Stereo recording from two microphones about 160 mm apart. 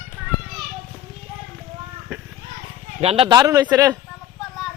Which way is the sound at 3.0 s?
35° right (ahead or behind).